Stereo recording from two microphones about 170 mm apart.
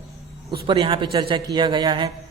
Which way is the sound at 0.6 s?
30° right (ahead or behind).